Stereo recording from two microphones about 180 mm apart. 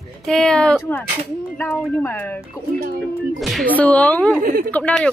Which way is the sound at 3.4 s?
Centre (ahead or behind).